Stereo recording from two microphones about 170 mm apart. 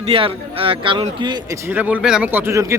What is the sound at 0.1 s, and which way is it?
A man's voice, 35° right (ahead or behind).